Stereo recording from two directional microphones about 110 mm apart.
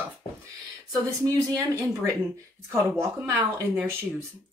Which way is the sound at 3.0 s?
25° right (ahead or behind).